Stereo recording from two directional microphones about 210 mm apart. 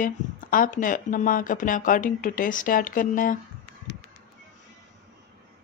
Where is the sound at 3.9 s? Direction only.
60° left (ahead or behind).